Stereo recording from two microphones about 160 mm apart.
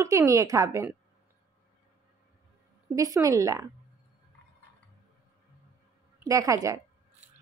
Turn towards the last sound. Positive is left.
turn(degrees=-20)  # may be behind; listen again after turning